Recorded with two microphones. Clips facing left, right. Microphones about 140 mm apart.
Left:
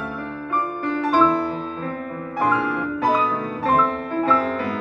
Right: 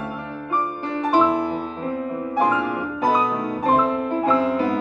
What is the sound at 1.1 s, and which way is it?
Music, 10° right (ahead or behind).